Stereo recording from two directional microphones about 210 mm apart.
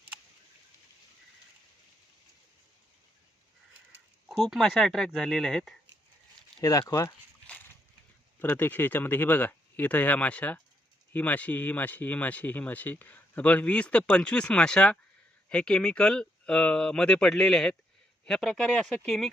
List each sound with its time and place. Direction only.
4.4 s speech: centre (ahead or behind)
6.6 s speech: 15° left (ahead or behind); by 19.3 s centre (ahead or behind)